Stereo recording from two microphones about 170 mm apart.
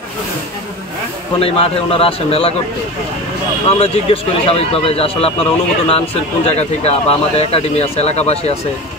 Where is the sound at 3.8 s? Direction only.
35° left (ahead or behind).